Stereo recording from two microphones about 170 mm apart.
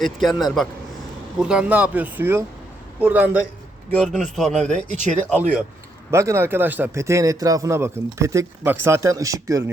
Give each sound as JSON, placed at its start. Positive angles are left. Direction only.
{"t": 0.0, "sound": "a man's voice", "side_deg": 0}
{"t": 4.9, "sound": "speech", "side_deg": -45}
{"t": 6.1, "sound": "a man's voice", "side_deg": -15}